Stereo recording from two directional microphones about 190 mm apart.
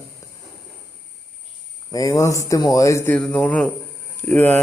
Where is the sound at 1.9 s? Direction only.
20° left (ahead or behind).